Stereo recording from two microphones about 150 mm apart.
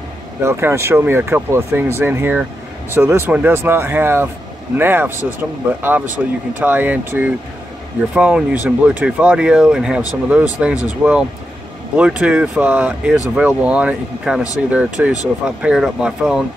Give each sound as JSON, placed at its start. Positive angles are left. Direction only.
{"t": 0.4, "sound": "speech", "side_deg": -15}